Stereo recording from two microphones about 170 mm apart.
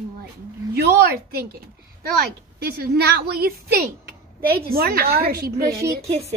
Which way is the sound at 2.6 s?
70° right (ahead or behind).